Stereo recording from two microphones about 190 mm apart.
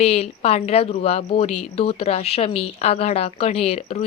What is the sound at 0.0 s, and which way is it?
Speech, 35° left (ahead or behind).